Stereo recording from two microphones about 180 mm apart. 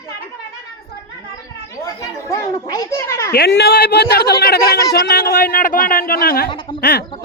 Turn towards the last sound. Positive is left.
turn(degrees=60)  # may be behind; listen again after turning